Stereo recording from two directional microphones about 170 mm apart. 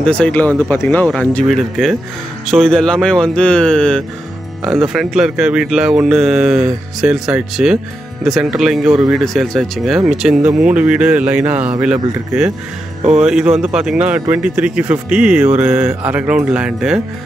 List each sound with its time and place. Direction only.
0.0 s speech: 5° left (ahead or behind)